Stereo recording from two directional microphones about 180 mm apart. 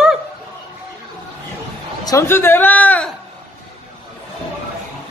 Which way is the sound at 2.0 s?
15° left (ahead or behind).